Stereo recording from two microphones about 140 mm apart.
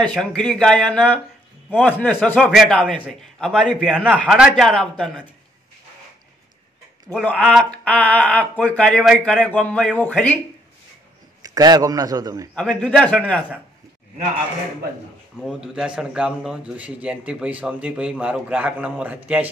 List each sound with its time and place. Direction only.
0.0 s a man's voice: 5° left (ahead or behind)
4.3 s a man's voice: 5° right (ahead or behind)
4.6 s a man's voice: 5° left (ahead or behind)
7.2 s speech: 10° left (ahead or behind)
11.4 s a man's voice: 30° right (ahead or behind)
12.5 s speech: 5° left (ahead or behind)
15.3 s a man's voice: centre (ahead or behind)